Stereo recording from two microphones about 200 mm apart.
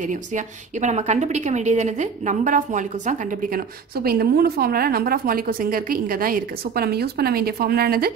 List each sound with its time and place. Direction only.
0.0 s a woman's voice: 40° right (ahead or behind)